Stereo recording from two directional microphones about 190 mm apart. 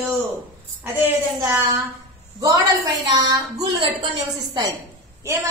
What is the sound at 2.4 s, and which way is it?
A woman's voice, 20° right (ahead or behind).